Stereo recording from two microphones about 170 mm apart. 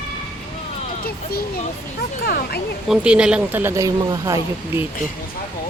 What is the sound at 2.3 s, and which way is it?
Speech, 60° left (ahead or behind).